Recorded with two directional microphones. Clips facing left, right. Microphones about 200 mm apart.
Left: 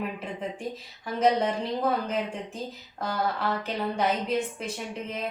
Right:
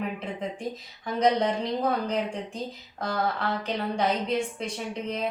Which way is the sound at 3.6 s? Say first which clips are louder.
Even; 5° left (ahead or behind).